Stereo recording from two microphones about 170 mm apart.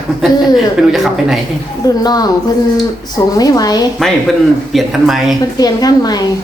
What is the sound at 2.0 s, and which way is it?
Speech, 20° left (ahead or behind).